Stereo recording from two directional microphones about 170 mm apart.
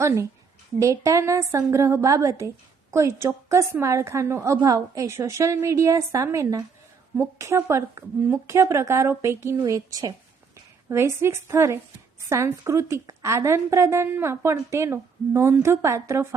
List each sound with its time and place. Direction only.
0.8 s a woman's voice: 20° right (ahead or behind)